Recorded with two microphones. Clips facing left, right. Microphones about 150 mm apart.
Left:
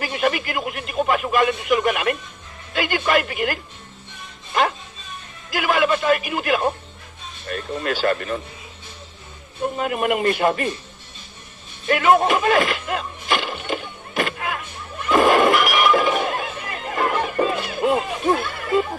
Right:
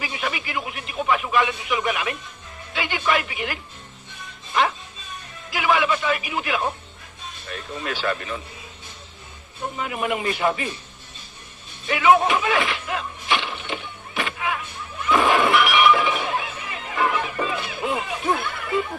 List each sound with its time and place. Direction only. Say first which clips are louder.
0.0 s speech: left 7 dB; 50° left (ahead or behind)
5.5 s speech: left 2 dB; 45° left (ahead or behind)
9.7 s speech: left 4 dB; 50° left (ahead or behind)
11.9 s a sound: left 1 dB; 50° left (ahead or behind)
15.0 s breaking: left 4 dB; 45° left (ahead or behind)
18.2 s a sound: left 4 dB; 40° left (ahead or behind)